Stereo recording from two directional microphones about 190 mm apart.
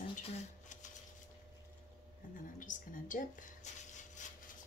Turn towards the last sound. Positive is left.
turn(degrees=40)  # may be behind; listen again after turning